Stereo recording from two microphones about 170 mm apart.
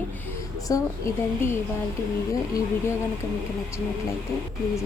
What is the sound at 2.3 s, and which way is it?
Speech, 20° left (ahead or behind).